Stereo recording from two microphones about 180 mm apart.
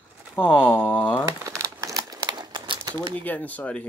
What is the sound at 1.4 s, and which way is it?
Crumpling, 15° right (ahead or behind).